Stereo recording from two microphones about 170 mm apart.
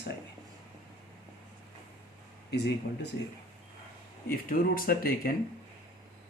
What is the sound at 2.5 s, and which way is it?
Speech, 80° left.